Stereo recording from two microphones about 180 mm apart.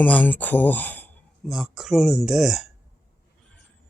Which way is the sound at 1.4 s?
Centre (ahead or behind).